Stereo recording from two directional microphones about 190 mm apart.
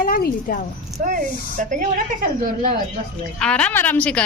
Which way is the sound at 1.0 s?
45° right (ahead or behind).